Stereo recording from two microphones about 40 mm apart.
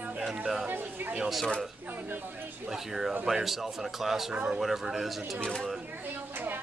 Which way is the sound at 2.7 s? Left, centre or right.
Centre.